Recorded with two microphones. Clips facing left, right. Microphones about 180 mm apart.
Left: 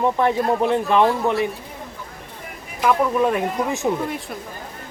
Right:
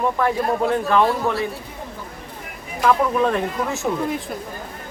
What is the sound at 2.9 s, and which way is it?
Speech, 10° left (ahead or behind).